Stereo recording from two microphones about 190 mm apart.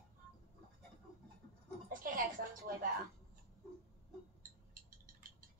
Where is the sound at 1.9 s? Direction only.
45° right (ahead or behind).